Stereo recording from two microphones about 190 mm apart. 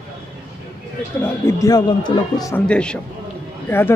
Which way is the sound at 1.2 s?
20° left (ahead or behind).